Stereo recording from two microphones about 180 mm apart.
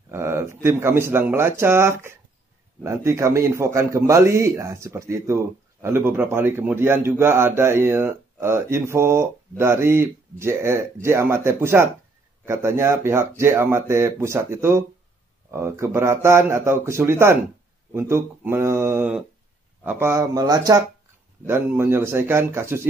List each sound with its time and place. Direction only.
0.1 s a man's voice: 15° right (ahead or behind)